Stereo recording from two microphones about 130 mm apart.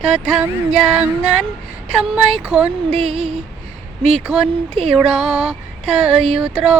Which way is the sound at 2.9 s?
55° right (ahead or behind).